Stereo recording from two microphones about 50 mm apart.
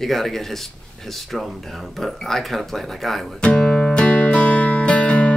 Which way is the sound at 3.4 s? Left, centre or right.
Centre.